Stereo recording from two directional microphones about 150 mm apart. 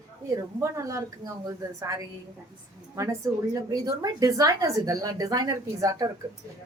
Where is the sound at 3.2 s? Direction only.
20° right (ahead or behind).